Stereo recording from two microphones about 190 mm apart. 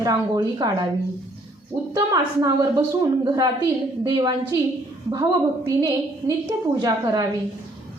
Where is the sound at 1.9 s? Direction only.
20° right (ahead or behind).